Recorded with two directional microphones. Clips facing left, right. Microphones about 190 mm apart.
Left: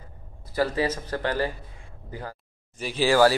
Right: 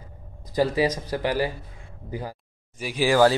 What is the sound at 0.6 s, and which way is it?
Speech, 15° right (ahead or behind).